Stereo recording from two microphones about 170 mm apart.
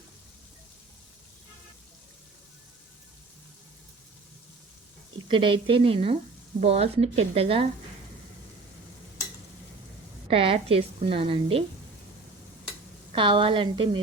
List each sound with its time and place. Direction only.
5.3 s a woman's voice: 30° right (ahead or behind)
10.2 s a woman's voice: 35° right (ahead or behind)
13.1 s a woman's voice: 30° right (ahead or behind)